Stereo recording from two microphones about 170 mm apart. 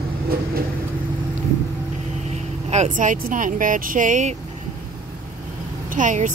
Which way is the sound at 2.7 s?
45° right (ahead or behind).